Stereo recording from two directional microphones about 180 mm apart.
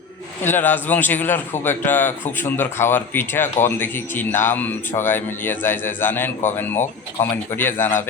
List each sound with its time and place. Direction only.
0.4 s a man's voice: 10° left (ahead or behind)